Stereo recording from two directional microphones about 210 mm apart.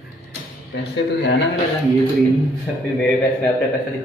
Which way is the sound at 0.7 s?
55° left (ahead or behind).